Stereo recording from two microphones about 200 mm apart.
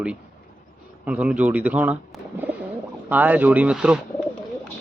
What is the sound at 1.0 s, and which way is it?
Speech, 5° right (ahead or behind).